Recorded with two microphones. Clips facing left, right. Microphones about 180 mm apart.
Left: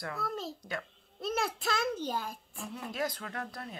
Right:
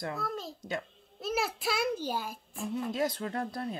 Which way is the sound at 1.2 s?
5° right (ahead or behind).